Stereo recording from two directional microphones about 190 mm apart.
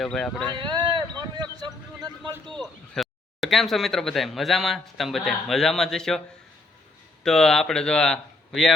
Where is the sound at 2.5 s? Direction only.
5° left (ahead or behind).